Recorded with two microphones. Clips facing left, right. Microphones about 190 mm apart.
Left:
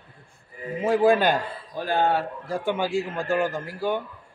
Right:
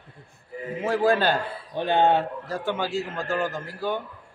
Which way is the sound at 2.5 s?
15° left (ahead or behind).